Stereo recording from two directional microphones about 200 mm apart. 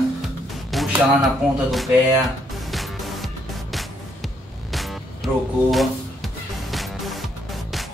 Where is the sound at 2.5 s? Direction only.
Centre (ahead or behind).